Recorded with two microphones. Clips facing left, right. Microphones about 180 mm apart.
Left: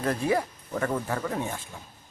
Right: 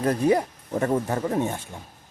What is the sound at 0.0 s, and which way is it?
Speech, 20° right (ahead or behind).